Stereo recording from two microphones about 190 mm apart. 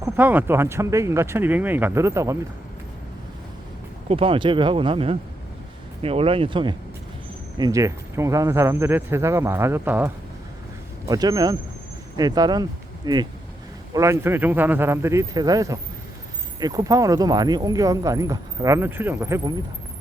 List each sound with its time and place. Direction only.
0.0 s speech: 10° right (ahead or behind)
4.1 s speech: 30° right (ahead or behind); by 10.1 s 10° right (ahead or behind)
11.1 s speech: 20° right (ahead or behind)